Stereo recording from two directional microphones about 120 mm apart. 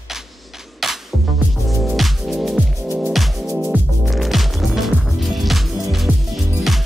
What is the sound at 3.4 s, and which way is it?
Music, 25° right (ahead or behind).